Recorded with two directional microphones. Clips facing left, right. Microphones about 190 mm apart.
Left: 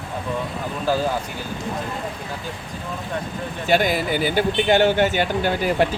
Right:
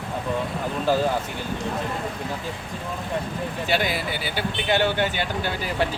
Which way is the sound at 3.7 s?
45° left (ahead or behind).